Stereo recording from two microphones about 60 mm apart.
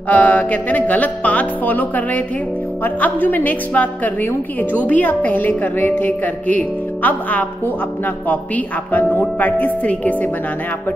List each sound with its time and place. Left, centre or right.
0.1 s speech: left